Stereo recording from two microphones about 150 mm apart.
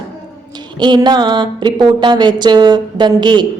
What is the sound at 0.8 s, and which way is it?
A woman's voice, 30° right (ahead or behind).